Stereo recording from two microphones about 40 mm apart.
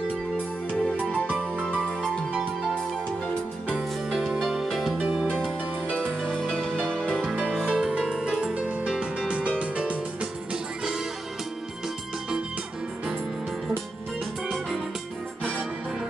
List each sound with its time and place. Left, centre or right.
4.4 s music: centre
5.9 s music: left
6.2 s music: centre
7.6 s music: right
8.5 s music: right